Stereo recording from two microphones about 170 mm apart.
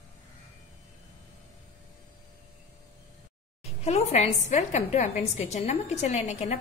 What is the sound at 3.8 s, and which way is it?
A woman's voice, 40° left (ahead or behind).